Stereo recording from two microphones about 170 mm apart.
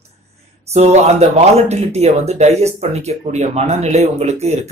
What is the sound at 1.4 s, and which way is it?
Speech, 40° right (ahead or behind).